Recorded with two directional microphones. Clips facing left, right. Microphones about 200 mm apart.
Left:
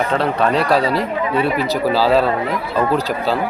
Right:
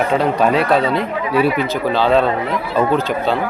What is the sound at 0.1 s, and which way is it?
Speech, 10° right (ahead or behind).